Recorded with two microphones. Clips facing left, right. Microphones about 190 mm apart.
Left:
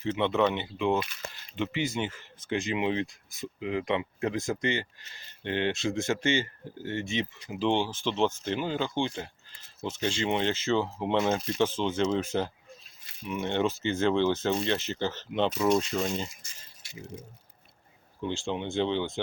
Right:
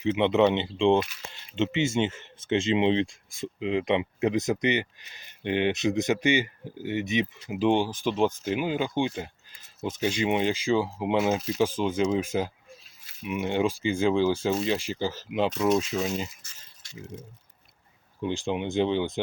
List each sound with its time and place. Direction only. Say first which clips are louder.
0.0 s speech: right 4 dB; 20° right (ahead or behind)
13.1 s keys jangling: right 3 dB; 5° right (ahead or behind)
13.3 s speech: right 2 dB; 10° right (ahead or behind)
16.4 s a sound: left 1 dB; 10° left (ahead or behind)
18.2 s speech: right 3 dB; 15° right (ahead or behind)